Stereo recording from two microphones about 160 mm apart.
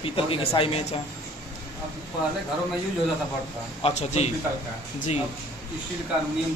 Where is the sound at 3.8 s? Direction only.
45° left (ahead or behind).